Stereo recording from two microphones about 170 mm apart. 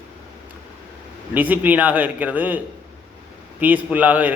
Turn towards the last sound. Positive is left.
turn(degrees=-10)  # may be behind; listen again after turning